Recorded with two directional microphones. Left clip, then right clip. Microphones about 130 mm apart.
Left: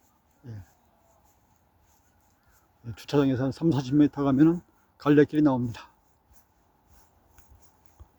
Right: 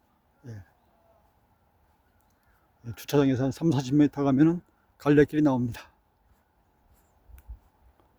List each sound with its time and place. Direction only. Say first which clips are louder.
0.4 s speech: right 1 dB; 30° right (ahead or behind)
2.8 s speech: right 1 dB; 30° right (ahead or behind)